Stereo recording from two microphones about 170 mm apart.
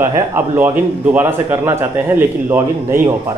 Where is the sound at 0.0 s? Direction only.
15° right (ahead or behind).